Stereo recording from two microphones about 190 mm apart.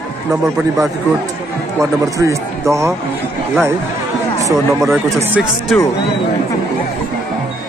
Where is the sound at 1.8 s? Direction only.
15° right (ahead or behind).